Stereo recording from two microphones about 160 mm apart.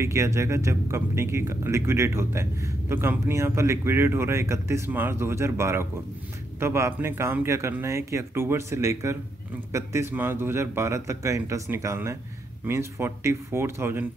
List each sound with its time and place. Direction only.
0.0 s speech: 15° right (ahead or behind)